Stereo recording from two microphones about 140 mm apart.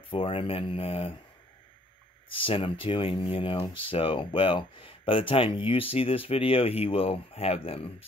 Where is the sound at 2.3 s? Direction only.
40° left (ahead or behind).